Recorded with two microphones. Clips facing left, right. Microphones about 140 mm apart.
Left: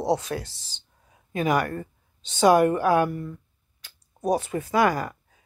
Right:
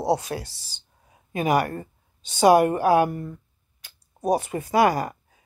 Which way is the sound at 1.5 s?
35° right (ahead or behind).